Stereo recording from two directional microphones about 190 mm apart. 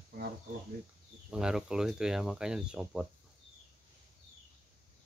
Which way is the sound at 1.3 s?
5° right (ahead or behind).